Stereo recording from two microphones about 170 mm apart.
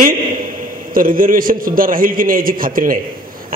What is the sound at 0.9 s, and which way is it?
A man's voice, 55° right (ahead or behind).